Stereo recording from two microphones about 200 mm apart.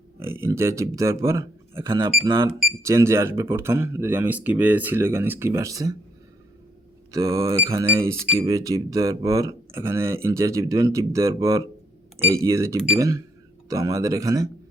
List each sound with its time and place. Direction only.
0.2 s speech: 10° right (ahead or behind)
2.5 s speech: centre (ahead or behind)
2.8 s speech: 15° right (ahead or behind)
7.1 s speech: 15° right (ahead or behind)